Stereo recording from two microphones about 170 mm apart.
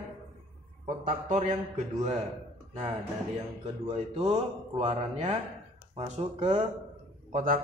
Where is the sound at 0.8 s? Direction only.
50° right (ahead or behind).